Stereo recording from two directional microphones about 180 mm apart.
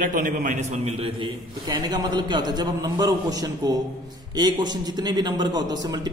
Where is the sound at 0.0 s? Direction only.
50° right (ahead or behind).